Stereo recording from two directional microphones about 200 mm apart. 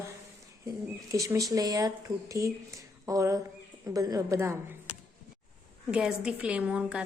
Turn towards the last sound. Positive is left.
turn(degrees=-5)  # may be behind; listen again after turning